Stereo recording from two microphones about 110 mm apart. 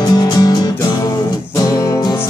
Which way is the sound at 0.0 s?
35° left (ahead or behind).